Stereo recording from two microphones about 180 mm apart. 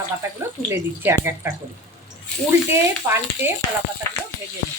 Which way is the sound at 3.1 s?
15° right (ahead or behind).